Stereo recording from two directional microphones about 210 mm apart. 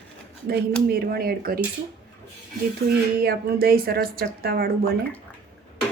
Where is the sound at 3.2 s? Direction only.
45° right (ahead or behind).